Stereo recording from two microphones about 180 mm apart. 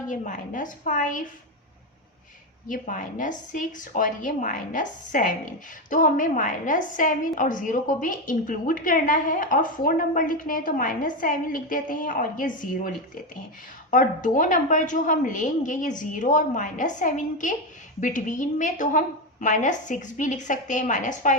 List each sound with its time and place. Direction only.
0.1 s a woman's voice: 45° left (ahead or behind)
2.6 s a woman's voice: 45° left (ahead or behind)
13.9 s a woman's voice: 45° left (ahead or behind)